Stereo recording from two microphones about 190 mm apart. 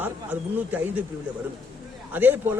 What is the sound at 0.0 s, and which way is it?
Speech, 10° right (ahead or behind).